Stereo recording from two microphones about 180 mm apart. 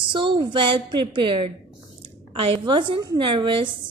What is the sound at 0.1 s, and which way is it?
A woman's voice, 25° right (ahead or behind).